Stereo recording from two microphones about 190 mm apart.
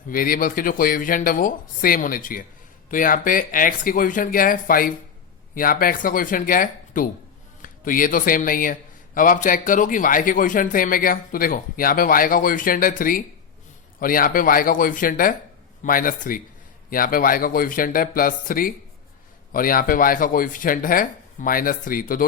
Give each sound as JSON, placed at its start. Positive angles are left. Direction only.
{"t": 0.1, "sound": "a man's voice", "side_deg": 45}